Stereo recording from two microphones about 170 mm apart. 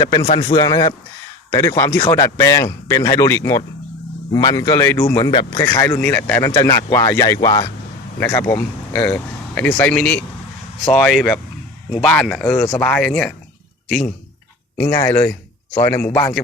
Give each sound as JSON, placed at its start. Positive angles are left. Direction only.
{"t": 0.0, "sound": "speech", "side_deg": 20}
{"t": 1.5, "sound": "speech", "side_deg": 15}
{"t": 5.1, "sound": "speech", "side_deg": 30}
{"t": 5.8, "sound": "speech", "side_deg": 10}
{"t": 8.2, "sound": "speech", "side_deg": 15}
{"t": 14.8, "sound": "speech", "side_deg": 15}